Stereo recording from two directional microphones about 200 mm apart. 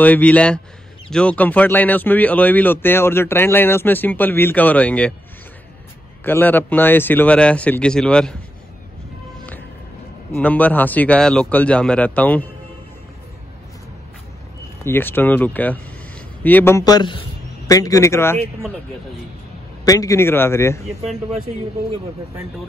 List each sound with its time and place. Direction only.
0.0 s a man's voice: 5° left (ahead or behind)
6.2 s a man's voice: 10° left (ahead or behind)
10.3 s a man's voice: 10° left (ahead or behind)
14.9 s a man's voice: 10° left (ahead or behind)
19.8 s a man's voice: 15° left (ahead or behind)